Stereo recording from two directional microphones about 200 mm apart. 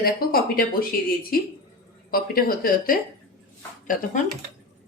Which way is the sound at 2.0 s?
45° left (ahead or behind).